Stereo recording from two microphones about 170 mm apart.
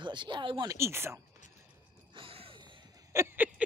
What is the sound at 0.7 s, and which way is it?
Speech, 15° right (ahead or behind).